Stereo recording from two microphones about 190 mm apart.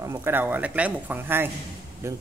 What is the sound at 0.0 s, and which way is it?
Speech, 15° right (ahead or behind).